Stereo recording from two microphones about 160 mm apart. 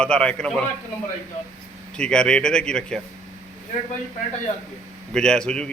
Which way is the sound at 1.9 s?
5° left (ahead or behind).